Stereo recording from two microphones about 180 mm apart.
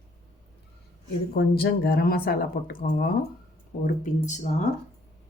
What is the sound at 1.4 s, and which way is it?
Speech, 60° left (ahead or behind).